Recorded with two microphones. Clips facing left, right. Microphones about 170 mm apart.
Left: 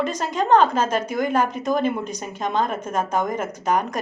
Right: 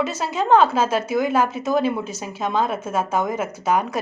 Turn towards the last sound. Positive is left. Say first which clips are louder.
# right 1 dB
turn(degrees=-5)  # may be behind; listen again after turning